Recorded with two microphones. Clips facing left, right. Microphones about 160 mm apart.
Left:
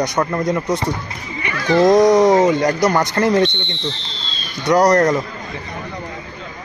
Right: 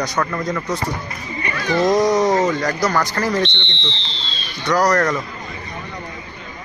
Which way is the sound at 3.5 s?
45° left (ahead or behind).